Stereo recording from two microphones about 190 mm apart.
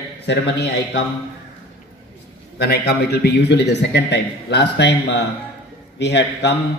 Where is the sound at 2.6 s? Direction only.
60° left (ahead or behind).